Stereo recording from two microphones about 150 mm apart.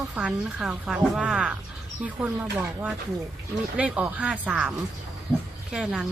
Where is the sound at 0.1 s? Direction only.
5° right (ahead or behind).